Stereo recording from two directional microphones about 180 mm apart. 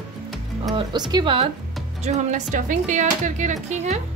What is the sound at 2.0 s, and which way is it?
Speech, 40° right (ahead or behind).